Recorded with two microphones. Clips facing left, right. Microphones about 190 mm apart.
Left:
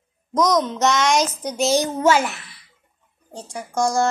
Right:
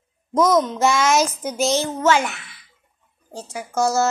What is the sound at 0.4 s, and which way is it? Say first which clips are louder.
A child's voice: right 2 dB; 5° right (ahead or behind).